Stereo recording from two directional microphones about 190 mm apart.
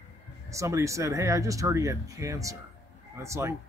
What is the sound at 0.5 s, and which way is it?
Speech, 15° right (ahead or behind).